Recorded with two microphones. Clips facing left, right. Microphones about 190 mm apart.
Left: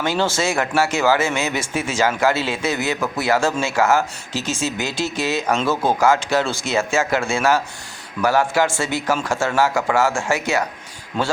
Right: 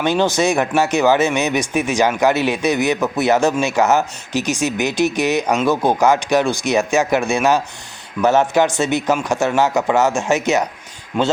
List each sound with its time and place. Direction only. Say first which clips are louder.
0.0 s speech: right 4 dB; 20° right (ahead or behind)